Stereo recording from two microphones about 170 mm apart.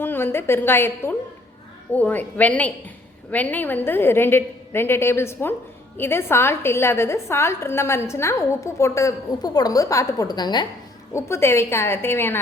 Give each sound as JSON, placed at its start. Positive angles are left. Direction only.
{"t": 0.0, "sound": "a woman's voice", "side_deg": 15}
{"t": 11.1, "sound": "a woman's voice", "side_deg": 15}